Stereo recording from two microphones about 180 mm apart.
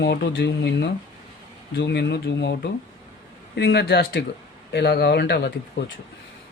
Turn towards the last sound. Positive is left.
turn(degrees=60)  # may be behind; listen again after turning